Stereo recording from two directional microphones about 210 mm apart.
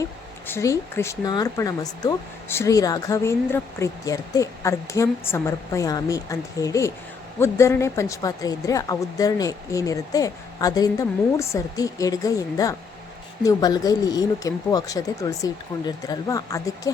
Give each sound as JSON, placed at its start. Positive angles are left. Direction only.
{"t": 0.0, "sound": "speech", "side_deg": 15}